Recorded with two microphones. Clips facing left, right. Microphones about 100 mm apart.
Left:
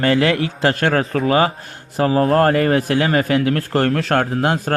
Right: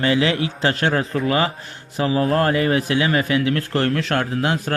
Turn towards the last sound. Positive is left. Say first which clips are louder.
# left 3 dB
turn(degrees=45)  # may be behind; listen again after turning